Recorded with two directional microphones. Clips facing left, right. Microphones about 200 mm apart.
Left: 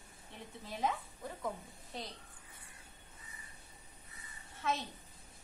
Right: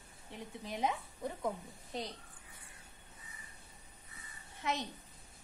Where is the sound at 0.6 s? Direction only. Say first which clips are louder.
Right 1 dB; 20° right (ahead or behind).